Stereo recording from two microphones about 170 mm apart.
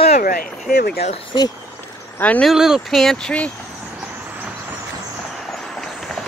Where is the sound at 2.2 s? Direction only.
10° left (ahead or behind).